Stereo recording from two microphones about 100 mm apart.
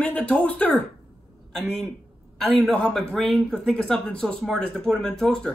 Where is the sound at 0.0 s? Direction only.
15° left (ahead or behind).